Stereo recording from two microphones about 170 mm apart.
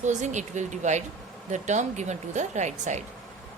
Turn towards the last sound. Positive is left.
turn(degrees=-45)  # may be behind; listen again after turning